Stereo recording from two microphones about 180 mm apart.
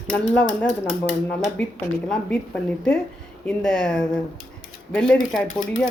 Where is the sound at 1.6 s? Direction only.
5° left (ahead or behind).